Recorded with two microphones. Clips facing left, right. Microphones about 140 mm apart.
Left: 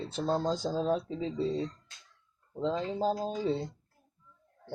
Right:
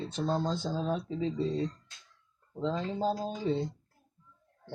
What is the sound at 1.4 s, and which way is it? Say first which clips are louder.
Speech: left 2 dB; centre (ahead or behind).